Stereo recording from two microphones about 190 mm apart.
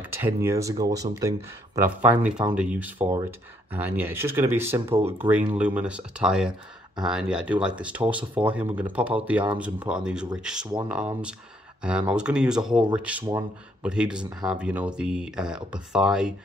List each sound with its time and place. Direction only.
0.0 s speech: 10° right (ahead or behind)
13.2 s speech: 20° right (ahead or behind)
13.8 s speech: 5° right (ahead or behind)